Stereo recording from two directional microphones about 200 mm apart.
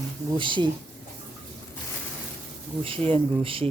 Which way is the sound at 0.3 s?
25° right (ahead or behind).